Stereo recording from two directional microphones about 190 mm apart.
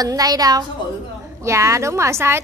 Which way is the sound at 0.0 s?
20° right (ahead or behind).